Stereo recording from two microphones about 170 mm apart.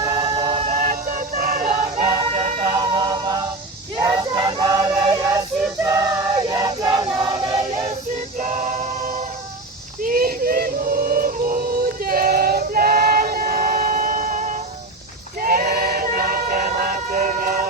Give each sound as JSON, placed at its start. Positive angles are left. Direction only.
{"t": 0.0, "sound": "choir", "side_deg": -25}
{"t": 0.6, "sound": "music", "side_deg": -45}
{"t": 2.0, "sound": "music", "side_deg": -35}
{"t": 3.9, "sound": "a sound", "side_deg": -20}
{"t": 6.5, "sound": "choir", "side_deg": -20}
{"t": 8.4, "sound": "music", "side_deg": -50}
{"t": 10.0, "sound": "a sound", "side_deg": -55}